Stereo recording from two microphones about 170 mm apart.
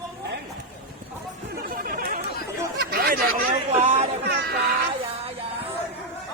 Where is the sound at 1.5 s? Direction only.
60° right (ahead or behind).